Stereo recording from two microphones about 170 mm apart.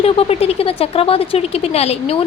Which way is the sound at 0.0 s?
35° left (ahead or behind).